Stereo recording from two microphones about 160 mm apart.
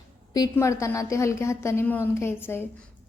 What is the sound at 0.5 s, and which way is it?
A woman's voice, 20° left (ahead or behind).